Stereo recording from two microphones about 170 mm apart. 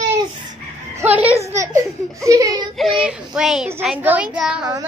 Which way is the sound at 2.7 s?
Centre (ahead or behind).